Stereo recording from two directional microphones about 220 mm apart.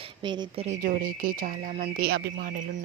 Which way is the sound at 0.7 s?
35° right (ahead or behind).